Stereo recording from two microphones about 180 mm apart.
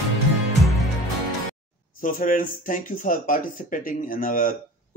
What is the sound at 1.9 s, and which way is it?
Speech, 50° left (ahead or behind).